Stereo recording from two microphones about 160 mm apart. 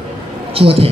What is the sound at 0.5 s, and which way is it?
Speech, 35° right (ahead or behind).